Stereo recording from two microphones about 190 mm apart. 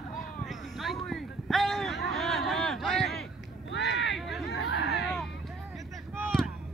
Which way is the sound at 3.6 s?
70° left (ahead or behind).